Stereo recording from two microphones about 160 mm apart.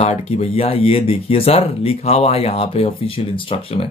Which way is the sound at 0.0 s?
40° left (ahead or behind).